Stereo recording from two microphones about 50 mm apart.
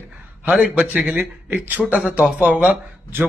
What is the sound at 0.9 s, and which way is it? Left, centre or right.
A man's voice, right.